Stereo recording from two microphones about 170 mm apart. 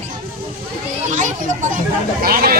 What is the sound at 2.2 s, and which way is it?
Speech, 60° right (ahead or behind).